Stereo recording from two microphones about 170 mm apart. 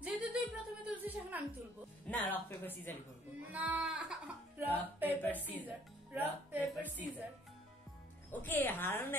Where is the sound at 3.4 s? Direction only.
10° right (ahead or behind).